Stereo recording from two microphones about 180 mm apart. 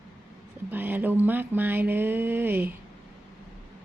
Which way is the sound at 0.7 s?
10° right (ahead or behind).